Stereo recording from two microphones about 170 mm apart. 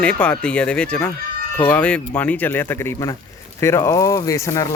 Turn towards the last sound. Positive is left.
turn(degrees=20)  # may be behind; listen again after turning